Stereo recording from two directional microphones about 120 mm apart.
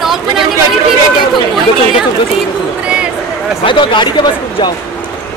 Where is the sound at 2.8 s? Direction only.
10° right (ahead or behind).